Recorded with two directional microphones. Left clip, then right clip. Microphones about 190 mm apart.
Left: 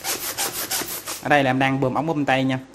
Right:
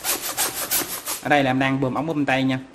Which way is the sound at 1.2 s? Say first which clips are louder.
Left 1 dB; 20° left (ahead or behind).